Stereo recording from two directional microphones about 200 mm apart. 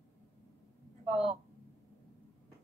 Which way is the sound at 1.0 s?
30° right (ahead or behind).